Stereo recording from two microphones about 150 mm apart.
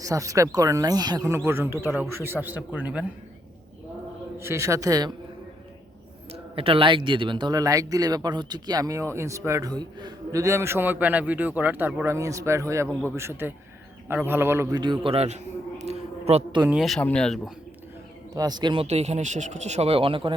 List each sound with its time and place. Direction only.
0.0 s speech: 20° right (ahead or behind)
1.5 s a man's voice: 15° right (ahead or behind)
4.4 s speech: 20° right (ahead or behind)
6.6 s a man's voice: 35° right (ahead or behind); by 14.8 s 15° right (ahead or behind)
14.8 s speech: 30° right (ahead or behind)
15.1 s speech: 45° right (ahead or behind)
15.8 s a sound: 45° right (ahead or behind)
16.6 s speech: centre (ahead or behind)
18.3 s speech: 25° right (ahead or behind)
18.9 s speech: 45° right (ahead or behind)